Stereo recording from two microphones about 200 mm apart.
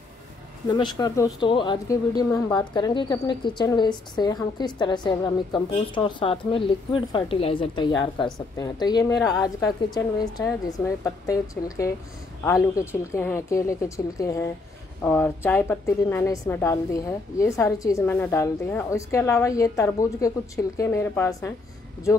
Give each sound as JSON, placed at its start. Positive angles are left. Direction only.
{"t": 0.7, "sound": "a woman's voice", "side_deg": 20}